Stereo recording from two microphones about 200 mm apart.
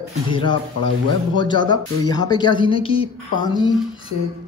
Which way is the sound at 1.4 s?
20° left (ahead or behind).